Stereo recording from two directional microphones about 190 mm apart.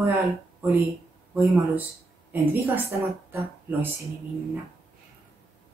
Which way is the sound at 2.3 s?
10° right (ahead or behind).